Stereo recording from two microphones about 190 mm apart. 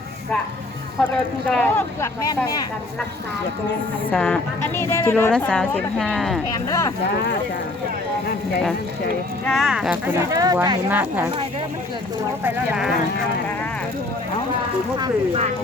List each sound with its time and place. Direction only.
1.5 s a woman's voice: 10° left (ahead or behind)
4.1 s a woman's voice: 5° left (ahead or behind)
6.7 s a woman's voice: 15° left (ahead or behind)
9.5 s speech: centre (ahead or behind)
12.4 s speech: 5° right (ahead or behind)